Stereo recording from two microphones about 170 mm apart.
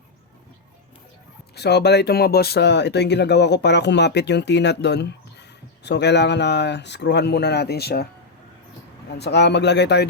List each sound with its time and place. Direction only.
1.5 s speech: 75° left (ahead or behind)
9.1 s speech: 80° left